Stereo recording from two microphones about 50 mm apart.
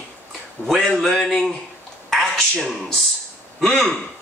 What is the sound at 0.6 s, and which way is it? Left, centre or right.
Speech, left.